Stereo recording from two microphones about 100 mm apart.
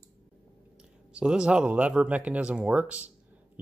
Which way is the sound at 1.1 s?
10° right (ahead or behind).